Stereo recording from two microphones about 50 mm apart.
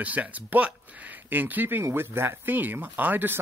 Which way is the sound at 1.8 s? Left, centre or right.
Right.